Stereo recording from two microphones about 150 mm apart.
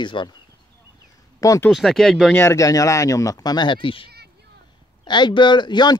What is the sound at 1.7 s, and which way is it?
Speech, centre (ahead or behind).